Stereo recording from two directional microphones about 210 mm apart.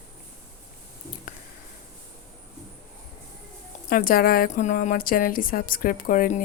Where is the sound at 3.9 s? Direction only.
40° left (ahead or behind).